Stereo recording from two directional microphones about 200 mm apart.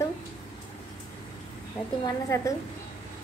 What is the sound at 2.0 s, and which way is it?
Speech, 15° left (ahead or behind).